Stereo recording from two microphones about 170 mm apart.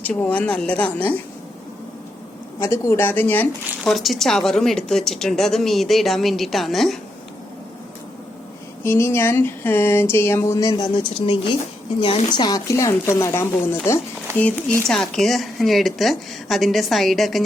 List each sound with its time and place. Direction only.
0.0 s speech: 10° left (ahead or behind)
2.6 s speech: 15° left (ahead or behind)
3.8 s a woman's voice: centre (ahead or behind)
8.8 s speech: 15° left (ahead or behind)
14.8 s a woman's voice: 5° left (ahead or behind)